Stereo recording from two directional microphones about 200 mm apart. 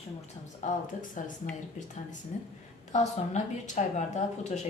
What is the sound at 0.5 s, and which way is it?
Speech, 40° left (ahead or behind).